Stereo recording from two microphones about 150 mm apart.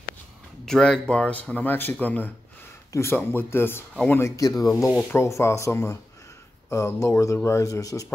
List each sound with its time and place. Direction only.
0.7 s speech: 5° left (ahead or behind); by 8.1 s 20° left (ahead or behind)